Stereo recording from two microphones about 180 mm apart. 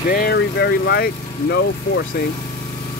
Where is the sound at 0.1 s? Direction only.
60° left (ahead or behind).